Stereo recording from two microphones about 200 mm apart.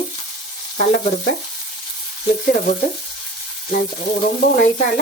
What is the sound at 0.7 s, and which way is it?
Frying, 40° left (ahead or behind).